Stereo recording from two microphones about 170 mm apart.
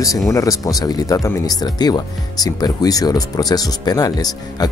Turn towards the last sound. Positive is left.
turn(degrees=20)  # may be behind; listen again after turning